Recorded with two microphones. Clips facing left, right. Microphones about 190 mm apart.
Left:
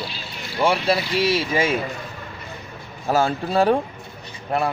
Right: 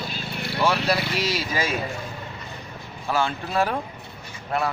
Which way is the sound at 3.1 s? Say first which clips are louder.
Left 5 dB; 40° left (ahead or behind).